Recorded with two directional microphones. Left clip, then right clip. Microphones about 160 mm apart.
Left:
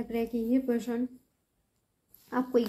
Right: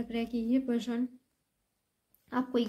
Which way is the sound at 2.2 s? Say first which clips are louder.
Left 4 dB; 25° right (ahead or behind).